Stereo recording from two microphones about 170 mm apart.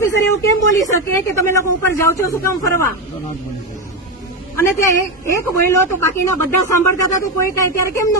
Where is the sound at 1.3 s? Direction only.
15° left (ahead or behind).